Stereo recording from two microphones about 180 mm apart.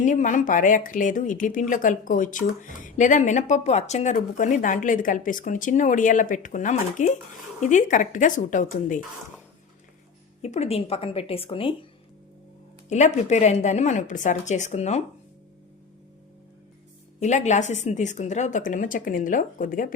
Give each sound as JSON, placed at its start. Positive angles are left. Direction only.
{"t": 0.0, "sound": "speech", "side_deg": 45}
{"t": 10.4, "sound": "a woman's voice", "side_deg": 35}
{"t": 12.9, "sound": "a woman's voice", "side_deg": 40}
{"t": 17.2, "sound": "speech", "side_deg": 40}